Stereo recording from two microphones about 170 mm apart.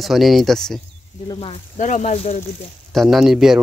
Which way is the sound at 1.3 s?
30° left (ahead or behind).